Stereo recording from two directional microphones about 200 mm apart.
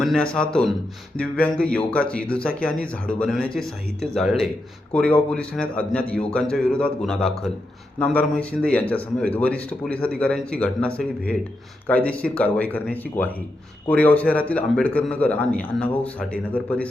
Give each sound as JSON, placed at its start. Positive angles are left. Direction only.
{"t": 0.0, "sound": "a man's voice", "side_deg": 5}